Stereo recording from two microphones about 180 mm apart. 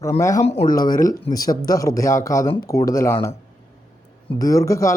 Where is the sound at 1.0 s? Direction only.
20° left (ahead or behind).